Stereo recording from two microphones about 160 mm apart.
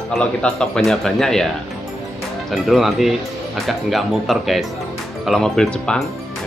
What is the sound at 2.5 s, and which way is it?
Speech, centre (ahead or behind).